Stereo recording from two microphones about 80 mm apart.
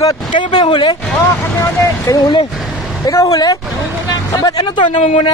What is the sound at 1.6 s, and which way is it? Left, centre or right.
Speech, left.